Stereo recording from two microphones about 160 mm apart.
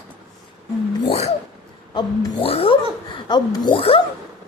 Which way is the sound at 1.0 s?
40° left (ahead or behind).